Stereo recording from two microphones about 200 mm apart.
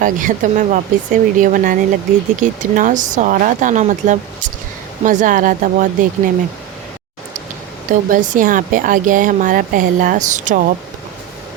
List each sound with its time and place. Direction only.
0.0 s speech: 40° right (ahead or behind)
8.1 s speech: 40° right (ahead or behind)